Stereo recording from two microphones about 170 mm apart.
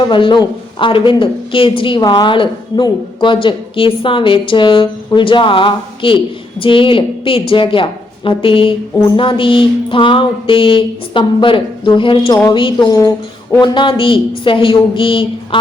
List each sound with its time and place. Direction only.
0.1 s a woman's voice: 30° left (ahead or behind)